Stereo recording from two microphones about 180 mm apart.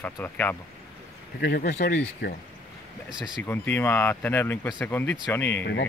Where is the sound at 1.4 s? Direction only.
60° left (ahead or behind).